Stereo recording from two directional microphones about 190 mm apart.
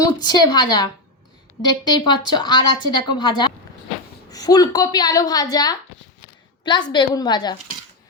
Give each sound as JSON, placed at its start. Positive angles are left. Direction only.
{"t": 0.0, "sound": "speech", "side_deg": 20}